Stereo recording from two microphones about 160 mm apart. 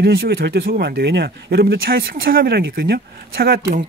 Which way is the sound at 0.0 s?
85° right.